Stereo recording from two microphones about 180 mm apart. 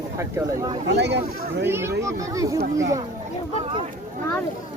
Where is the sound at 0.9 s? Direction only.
70° right (ahead or behind).